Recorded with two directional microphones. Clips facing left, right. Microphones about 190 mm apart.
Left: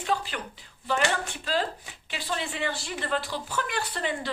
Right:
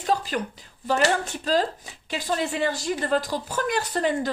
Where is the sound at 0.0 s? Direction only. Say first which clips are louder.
Right 5 dB; 40° right (ahead or behind).